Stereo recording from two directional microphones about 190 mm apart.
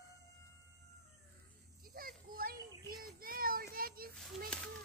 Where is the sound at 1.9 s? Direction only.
50° right (ahead or behind).